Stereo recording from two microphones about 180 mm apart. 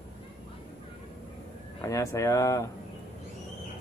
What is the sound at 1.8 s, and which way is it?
Speech, 20° left (ahead or behind).